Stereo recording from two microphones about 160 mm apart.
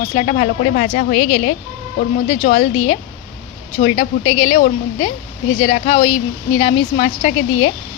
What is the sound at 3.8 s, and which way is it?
Speech, 45° left (ahead or behind).